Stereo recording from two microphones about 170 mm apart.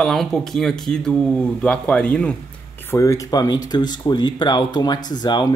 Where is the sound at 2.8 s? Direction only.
15° left (ahead or behind).